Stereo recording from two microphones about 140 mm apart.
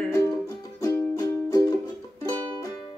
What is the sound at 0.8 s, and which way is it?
Music, 20° left (ahead or behind).